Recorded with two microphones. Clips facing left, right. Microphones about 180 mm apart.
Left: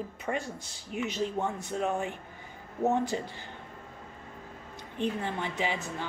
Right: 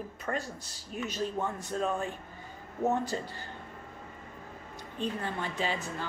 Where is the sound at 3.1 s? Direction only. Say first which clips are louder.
Left 2 dB; 10° left (ahead or behind).